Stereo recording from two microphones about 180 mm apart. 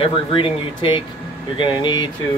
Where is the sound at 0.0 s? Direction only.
30° left (ahead or behind).